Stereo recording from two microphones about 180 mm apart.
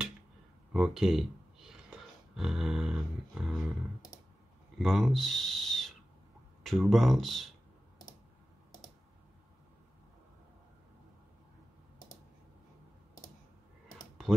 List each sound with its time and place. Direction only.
0.7 s speech: centre (ahead or behind)
4.7 s speech: centre (ahead or behind)